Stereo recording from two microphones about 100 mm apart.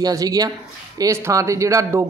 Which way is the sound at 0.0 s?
35° right (ahead or behind).